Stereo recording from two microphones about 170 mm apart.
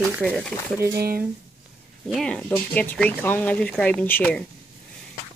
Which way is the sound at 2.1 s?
5° left (ahead or behind).